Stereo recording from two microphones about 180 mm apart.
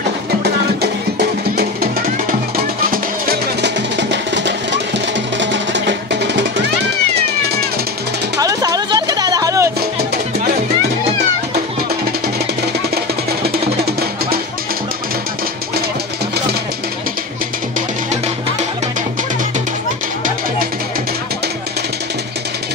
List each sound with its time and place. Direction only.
2.8 s music: 55° right (ahead or behind); by 4.6 s 75° right (ahead or behind)
5.4 s music: 85° right
8.4 s music: 20° right (ahead or behind)